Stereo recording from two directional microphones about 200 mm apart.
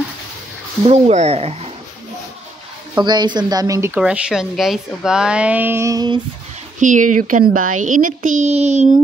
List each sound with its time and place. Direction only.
0.8 s speech: 35° right (ahead or behind)
3.0 s a woman's voice: 20° right (ahead or behind)
6.8 s speech: 40° right (ahead or behind)